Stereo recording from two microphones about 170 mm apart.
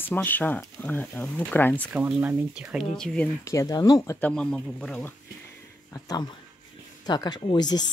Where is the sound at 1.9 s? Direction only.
10° right (ahead or behind).